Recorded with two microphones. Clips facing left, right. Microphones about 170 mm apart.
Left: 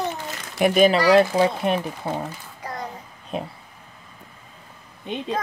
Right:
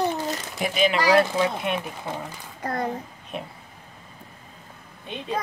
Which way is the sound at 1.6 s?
40° left (ahead or behind).